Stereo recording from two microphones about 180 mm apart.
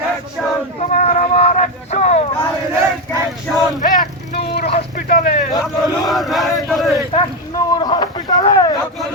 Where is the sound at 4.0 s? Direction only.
60° left (ahead or behind).